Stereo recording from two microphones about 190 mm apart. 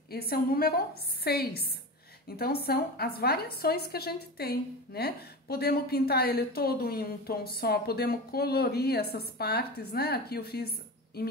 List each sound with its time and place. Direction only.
0.1 s a woman's voice: 55° left (ahead or behind)